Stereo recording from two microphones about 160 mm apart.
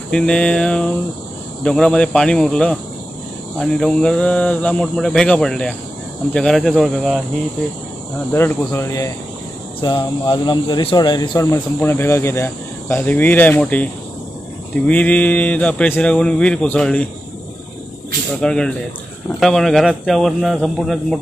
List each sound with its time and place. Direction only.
0.1 s speech: 5° left (ahead or behind)
8.3 s speech: 15° left (ahead or behind)
14.9 s speech: 10° left (ahead or behind)
18.4 s speech: 5° left (ahead or behind)